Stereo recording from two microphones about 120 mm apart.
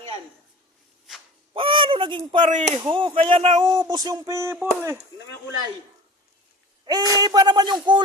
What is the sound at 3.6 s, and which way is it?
Speech, 35° right (ahead or behind).